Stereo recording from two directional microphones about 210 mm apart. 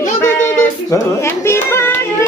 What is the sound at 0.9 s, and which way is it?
A child's voice, 15° left (ahead or behind).